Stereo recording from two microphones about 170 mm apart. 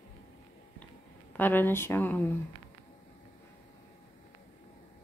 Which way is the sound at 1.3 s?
10° left (ahead or behind).